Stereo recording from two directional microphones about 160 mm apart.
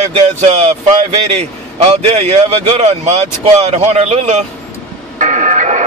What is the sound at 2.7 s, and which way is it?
Speech, 45° right (ahead or behind).